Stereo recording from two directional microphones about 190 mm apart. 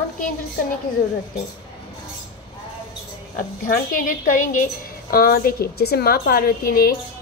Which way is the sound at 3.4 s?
45° left (ahead or behind).